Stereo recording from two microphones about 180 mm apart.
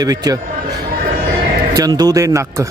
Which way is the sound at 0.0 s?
20° right (ahead or behind).